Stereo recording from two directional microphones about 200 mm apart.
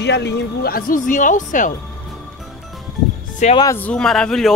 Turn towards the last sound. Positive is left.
turn(degrees=0)  # may be behind; listen again after turning